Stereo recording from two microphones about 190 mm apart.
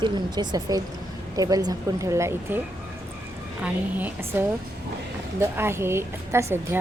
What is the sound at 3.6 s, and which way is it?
A woman's voice, 10° right (ahead or behind).